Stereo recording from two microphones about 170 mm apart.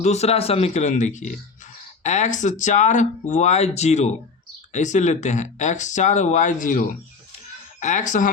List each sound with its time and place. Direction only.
0.0 s speech: 40° left (ahead or behind)